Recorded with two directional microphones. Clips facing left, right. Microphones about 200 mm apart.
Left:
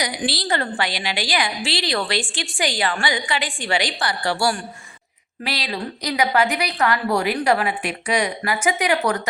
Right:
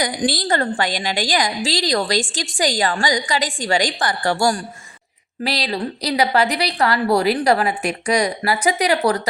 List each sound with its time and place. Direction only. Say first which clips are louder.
0.0 s a woman's voice: right 4 dB; 50° right (ahead or behind)